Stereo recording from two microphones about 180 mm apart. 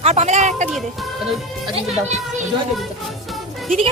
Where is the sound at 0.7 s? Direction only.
Centre (ahead or behind).